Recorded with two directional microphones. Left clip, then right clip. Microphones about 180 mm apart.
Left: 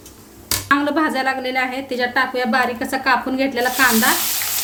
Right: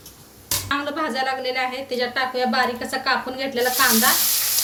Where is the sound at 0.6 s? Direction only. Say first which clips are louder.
Left 8 dB; 50° left (ahead or behind).